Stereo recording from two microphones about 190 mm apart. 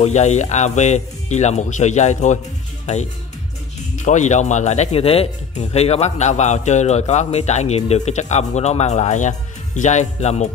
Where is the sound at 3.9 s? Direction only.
40° left (ahead or behind).